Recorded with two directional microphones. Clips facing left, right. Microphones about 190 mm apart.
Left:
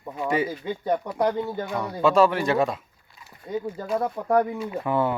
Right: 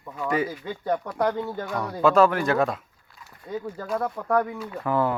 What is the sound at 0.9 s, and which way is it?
Speech, 5° left (ahead or behind).